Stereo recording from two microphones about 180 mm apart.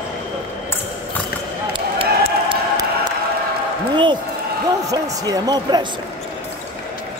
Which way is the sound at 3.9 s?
25° right (ahead or behind).